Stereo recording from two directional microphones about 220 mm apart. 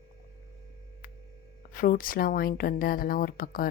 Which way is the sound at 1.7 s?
40° left (ahead or behind).